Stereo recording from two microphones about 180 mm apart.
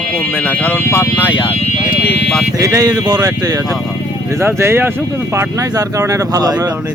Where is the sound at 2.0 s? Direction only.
65° left (ahead or behind).